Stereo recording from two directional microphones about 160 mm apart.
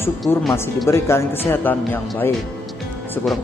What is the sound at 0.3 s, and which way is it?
Speech, 15° left (ahead or behind).